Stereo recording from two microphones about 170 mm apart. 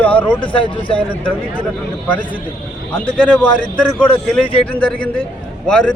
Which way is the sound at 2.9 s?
10° left (ahead or behind).